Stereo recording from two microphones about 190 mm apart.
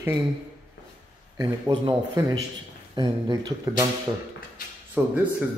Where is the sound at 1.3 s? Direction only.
25° right (ahead or behind).